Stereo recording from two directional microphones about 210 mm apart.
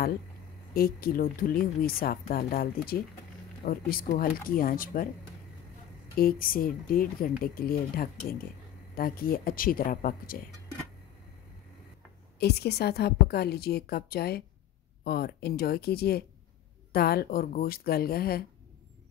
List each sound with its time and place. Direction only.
0.7 s speech: 45° left (ahead or behind)
6.1 s speech: 45° left (ahead or behind)
12.4 s speech: 50° left (ahead or behind)